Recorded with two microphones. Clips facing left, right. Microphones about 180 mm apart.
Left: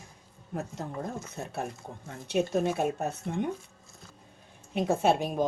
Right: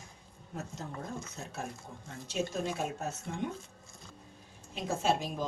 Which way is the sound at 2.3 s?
60° left (ahead or behind).